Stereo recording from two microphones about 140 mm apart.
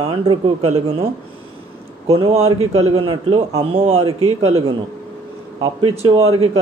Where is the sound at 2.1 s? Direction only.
45° right (ahead or behind).